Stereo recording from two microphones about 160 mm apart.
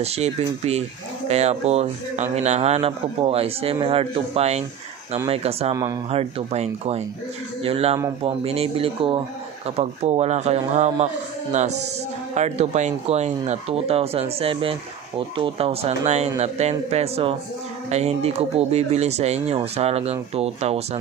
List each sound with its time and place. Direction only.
0.0 s speech: 40° right (ahead or behind)